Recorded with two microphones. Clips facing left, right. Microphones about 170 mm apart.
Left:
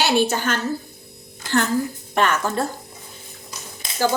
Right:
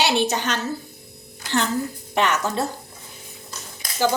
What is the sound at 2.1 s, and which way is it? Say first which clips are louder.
Speech: left 1 dB; 20° right (ahead or behind).